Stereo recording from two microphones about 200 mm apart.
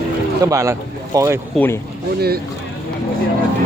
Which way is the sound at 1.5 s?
10° left (ahead or behind).